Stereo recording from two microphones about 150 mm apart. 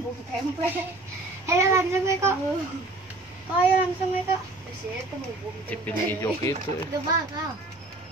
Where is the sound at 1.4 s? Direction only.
20° right (ahead or behind).